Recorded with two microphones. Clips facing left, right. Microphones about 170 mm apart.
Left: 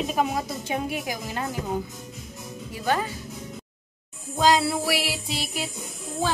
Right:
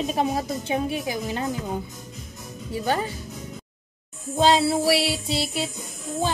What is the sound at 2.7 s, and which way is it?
Music, 25° right (ahead or behind).